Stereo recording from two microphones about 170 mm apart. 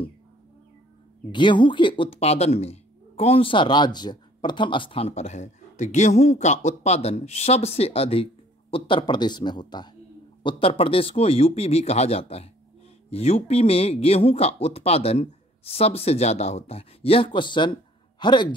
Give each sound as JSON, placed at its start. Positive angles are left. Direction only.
{"t": 1.3, "sound": "speech", "side_deg": 30}